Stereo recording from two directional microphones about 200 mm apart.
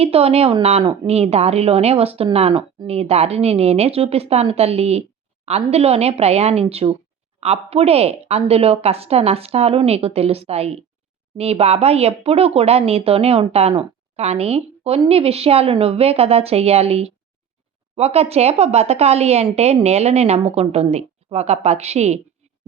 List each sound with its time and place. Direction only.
0.0 s speech: 30° right (ahead or behind)